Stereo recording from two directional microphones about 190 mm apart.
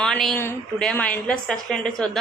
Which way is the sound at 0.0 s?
5° left (ahead or behind).